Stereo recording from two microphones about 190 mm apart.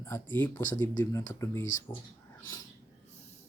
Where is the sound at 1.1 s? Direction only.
15° left (ahead or behind).